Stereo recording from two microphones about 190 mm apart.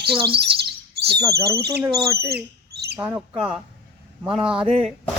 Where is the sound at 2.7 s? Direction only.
60° right (ahead or behind).